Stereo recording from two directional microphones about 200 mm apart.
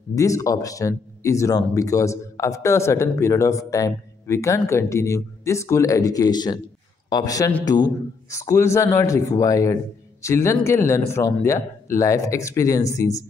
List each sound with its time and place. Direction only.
0.1 s speech: 15° left (ahead or behind)